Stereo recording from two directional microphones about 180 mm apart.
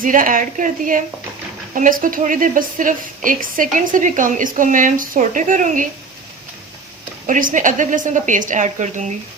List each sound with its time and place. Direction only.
0.0 s a woman's voice: 50° right (ahead or behind)
7.3 s a woman's voice: 45° right (ahead or behind)